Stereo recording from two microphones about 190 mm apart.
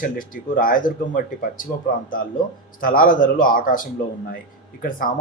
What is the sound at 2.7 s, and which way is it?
Speech, 45° left (ahead or behind).